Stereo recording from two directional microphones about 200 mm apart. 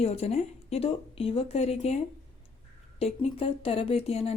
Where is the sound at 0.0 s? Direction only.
30° left (ahead or behind).